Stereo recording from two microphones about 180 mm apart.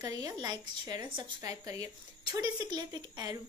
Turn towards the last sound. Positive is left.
turn(degrees=-20)  # may be behind; listen again after turning